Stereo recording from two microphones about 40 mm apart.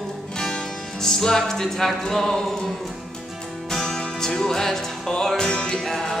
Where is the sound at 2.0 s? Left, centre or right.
Centre.